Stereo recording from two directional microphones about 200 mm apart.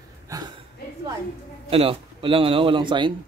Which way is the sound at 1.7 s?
25° right (ahead or behind).